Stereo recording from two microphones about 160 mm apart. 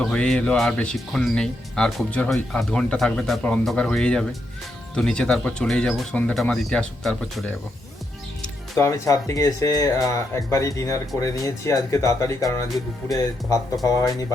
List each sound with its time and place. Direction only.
0.0 s speech: 5° left (ahead or behind)
8.8 s speech: 20° left (ahead or behind)